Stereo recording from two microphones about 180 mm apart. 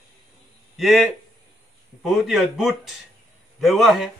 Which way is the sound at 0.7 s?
Centre (ahead or behind).